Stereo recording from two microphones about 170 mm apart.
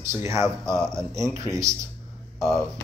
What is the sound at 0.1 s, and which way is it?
Speech, 15° right (ahead or behind).